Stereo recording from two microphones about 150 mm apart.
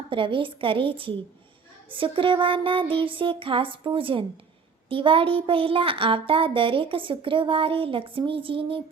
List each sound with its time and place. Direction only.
0.1 s speech: 35° right (ahead or behind)